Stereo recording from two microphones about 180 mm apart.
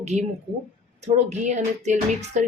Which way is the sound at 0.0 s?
40° right (ahead or behind).